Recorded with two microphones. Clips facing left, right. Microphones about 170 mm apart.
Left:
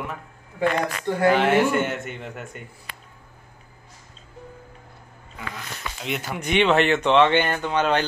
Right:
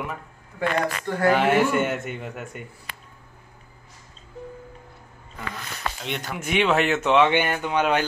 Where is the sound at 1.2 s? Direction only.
5° right (ahead or behind).